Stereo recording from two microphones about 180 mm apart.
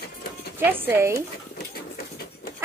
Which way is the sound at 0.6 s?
10° right (ahead or behind).